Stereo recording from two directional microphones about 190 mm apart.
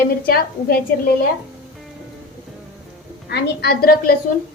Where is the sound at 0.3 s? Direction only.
55° left (ahead or behind).